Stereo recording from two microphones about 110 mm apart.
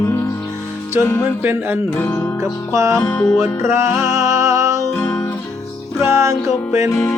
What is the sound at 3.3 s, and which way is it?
Music, 25° right (ahead or behind).